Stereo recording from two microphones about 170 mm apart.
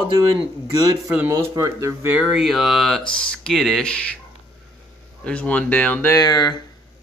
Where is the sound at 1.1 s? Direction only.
15° right (ahead or behind).